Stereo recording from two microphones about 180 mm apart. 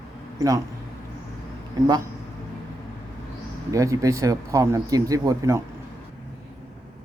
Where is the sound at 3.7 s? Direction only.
20° right (ahead or behind).